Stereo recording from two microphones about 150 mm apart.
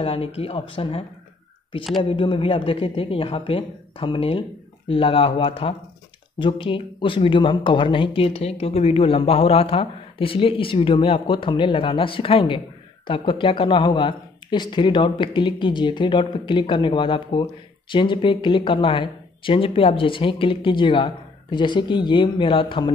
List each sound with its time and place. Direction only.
0.0 s speech: 40° left (ahead or behind)
2.0 s speech: 35° left (ahead or behind)